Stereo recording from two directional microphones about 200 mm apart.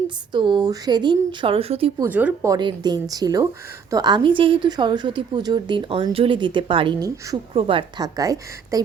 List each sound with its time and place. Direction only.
0.3 s a woman's voice: 20° right (ahead or behind)
2.0 s a woman's voice: 10° right (ahead or behind)